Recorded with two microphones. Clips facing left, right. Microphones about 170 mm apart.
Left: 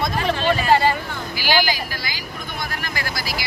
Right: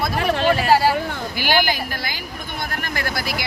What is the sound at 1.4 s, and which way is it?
Speech, 55° right (ahead or behind).